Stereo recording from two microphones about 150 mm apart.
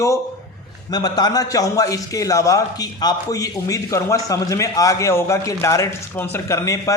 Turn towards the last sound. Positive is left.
turn(degrees=20)  # may be behind; listen again after turning